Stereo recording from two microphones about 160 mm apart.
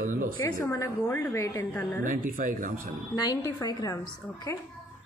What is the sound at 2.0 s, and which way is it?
Speech, 60° right (ahead or behind).